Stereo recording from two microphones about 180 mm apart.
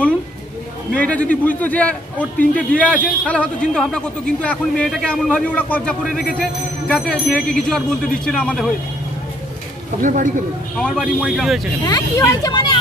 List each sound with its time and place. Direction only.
0.9 s a man's voice: 5° left (ahead or behind)
10.0 s a man's voice: 45° right (ahead or behind)
10.8 s speech: 5° left (ahead or behind)
11.8 s speech: 20° left (ahead or behind)